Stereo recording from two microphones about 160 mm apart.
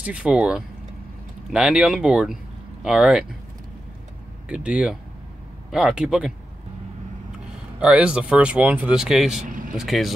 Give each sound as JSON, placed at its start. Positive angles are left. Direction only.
{"t": 0.0, "sound": "speech", "side_deg": -10}
{"t": 4.5, "sound": "speech", "side_deg": -5}
{"t": 7.8, "sound": "speech", "side_deg": -5}
{"t": 9.5, "sound": "vehicle", "side_deg": -55}
{"t": 9.8, "sound": "speech", "side_deg": 0}